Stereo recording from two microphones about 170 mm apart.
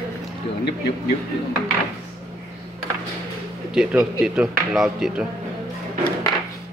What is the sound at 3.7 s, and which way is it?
Speech, 5° right (ahead or behind).